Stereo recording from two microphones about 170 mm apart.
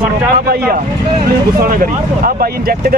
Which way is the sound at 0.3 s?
60° right (ahead or behind).